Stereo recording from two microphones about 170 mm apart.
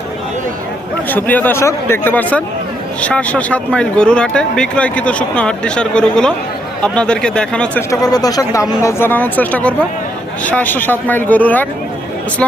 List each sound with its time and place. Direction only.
1.1 s speech: 10° left (ahead or behind)
7.9 s speech: 20° left (ahead or behind)